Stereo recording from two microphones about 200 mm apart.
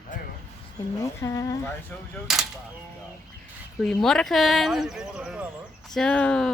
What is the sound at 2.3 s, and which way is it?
Speech, centre (ahead or behind).